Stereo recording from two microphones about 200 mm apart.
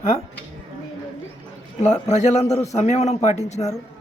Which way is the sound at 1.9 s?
35° left (ahead or behind).